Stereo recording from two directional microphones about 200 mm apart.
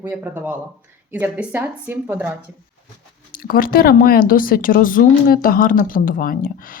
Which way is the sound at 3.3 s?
45° left (ahead or behind).